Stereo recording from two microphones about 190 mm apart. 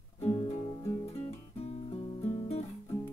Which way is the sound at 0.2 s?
30° left (ahead or behind).